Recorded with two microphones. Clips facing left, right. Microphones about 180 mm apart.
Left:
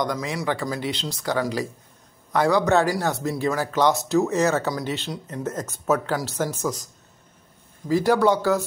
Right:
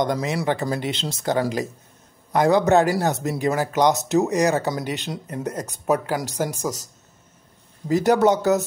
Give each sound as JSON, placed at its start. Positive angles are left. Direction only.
{"t": 0.0, "sound": "speech", "side_deg": -25}
{"t": 7.9, "sound": "speech", "side_deg": -20}